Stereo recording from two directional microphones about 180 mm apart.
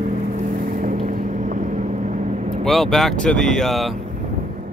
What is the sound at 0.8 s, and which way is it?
Boat, 45° right (ahead or behind).